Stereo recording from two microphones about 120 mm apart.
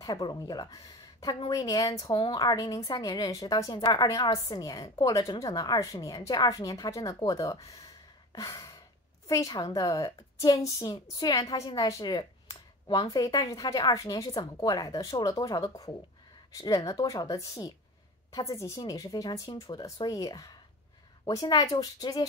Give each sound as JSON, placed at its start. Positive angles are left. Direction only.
{"t": 0.0, "sound": "a woman's voice", "side_deg": 35}
{"t": 2.0, "sound": "speech", "side_deg": 45}
{"t": 2.4, "sound": "a woman's voice", "side_deg": 30}
{"t": 8.3, "sound": "sigh", "side_deg": 30}
{"t": 9.3, "sound": "a woman's voice", "side_deg": 30}